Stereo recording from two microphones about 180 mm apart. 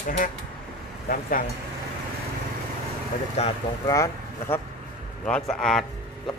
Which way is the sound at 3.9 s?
15° left (ahead or behind).